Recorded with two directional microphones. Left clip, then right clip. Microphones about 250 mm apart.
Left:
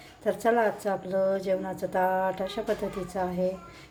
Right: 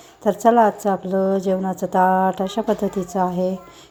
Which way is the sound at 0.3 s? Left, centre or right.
Centre.